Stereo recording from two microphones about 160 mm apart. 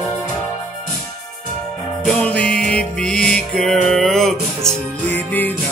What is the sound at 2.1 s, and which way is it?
Music, 5° left (ahead or behind).